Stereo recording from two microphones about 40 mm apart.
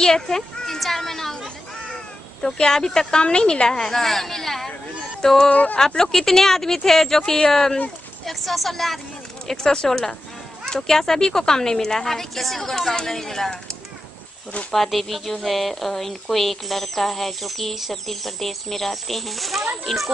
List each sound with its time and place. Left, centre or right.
0.0 s a child's voice: centre
2.4 s speech: centre
5.5 s speech: left
5.8 s speech: centre
8.3 s speech: centre
9.5 s speech: centre
14.7 s speech: centre